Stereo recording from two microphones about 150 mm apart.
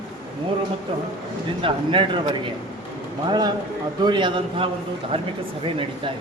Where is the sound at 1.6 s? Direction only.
35° right (ahead or behind).